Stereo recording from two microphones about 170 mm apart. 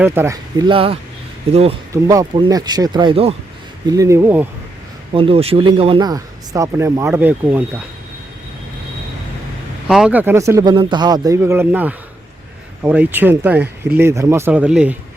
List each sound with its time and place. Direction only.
0.0 s speech: 15° right (ahead or behind)
0.5 s speech: 30° right (ahead or behind)
1.9 s speech: 20° right (ahead or behind)
3.8 s speech: 20° right (ahead or behind)
5.1 s speech: 35° right (ahead or behind); by 7.6 s 10° right (ahead or behind)
9.8 s speech: 5° right (ahead or behind)